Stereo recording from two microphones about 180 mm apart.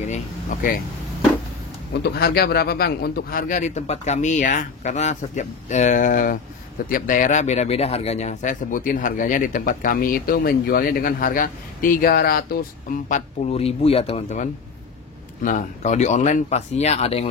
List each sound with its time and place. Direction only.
0.0 s speech: 40° left (ahead or behind)
2.0 s speech: 65° left (ahead or behind)
13.1 s speech: 35° left (ahead or behind)